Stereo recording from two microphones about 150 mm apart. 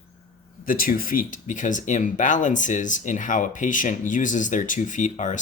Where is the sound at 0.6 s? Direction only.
70° left (ahead or behind).